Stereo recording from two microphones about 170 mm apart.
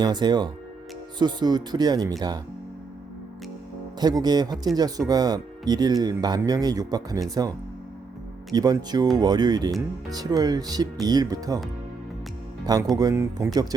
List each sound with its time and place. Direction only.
0.0 s speech: 25° right (ahead or behind)
4.0 s speech: 25° right (ahead or behind)
8.5 s speech: 25° right (ahead or behind)
13.0 s speech: 20° right (ahead or behind)